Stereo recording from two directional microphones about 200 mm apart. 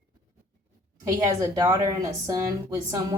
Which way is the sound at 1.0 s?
15° right (ahead or behind).